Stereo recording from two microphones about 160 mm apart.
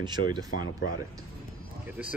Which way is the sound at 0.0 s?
25° right (ahead or behind).